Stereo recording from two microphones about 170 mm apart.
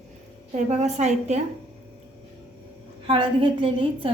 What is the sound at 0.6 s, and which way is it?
Speech, 40° right (ahead or behind).